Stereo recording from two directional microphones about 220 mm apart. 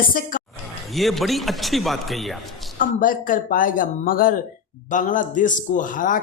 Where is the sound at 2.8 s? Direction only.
40° left (ahead or behind).